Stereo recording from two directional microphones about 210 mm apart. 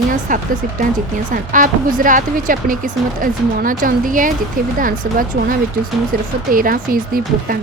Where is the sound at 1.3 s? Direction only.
40° right (ahead or behind).